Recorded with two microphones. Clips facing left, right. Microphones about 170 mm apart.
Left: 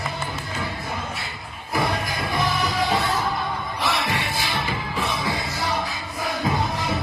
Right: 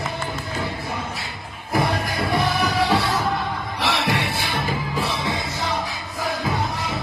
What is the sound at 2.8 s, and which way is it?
Music, 75° right (ahead or behind).